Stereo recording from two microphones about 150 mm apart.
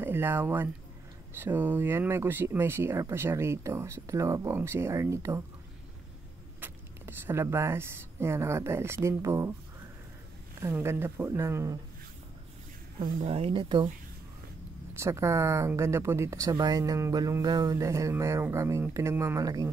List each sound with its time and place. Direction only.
0.0 s speech: 15° right (ahead or behind)
6.6 s speech: 15° right (ahead or behind)
10.6 s speech: 15° right (ahead or behind)
13.2 s speech: 40° right (ahead or behind)
15.0 s speech: 20° right (ahead or behind)